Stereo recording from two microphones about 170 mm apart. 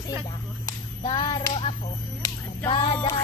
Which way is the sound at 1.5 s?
35° left (ahead or behind).